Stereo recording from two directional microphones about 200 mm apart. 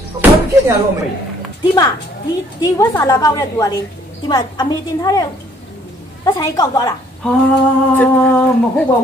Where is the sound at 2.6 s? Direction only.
15° left (ahead or behind).